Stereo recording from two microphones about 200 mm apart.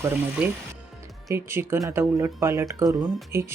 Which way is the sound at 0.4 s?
5° right (ahead or behind).